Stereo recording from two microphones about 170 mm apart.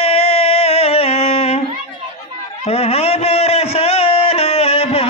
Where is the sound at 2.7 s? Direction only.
35° left (ahead or behind).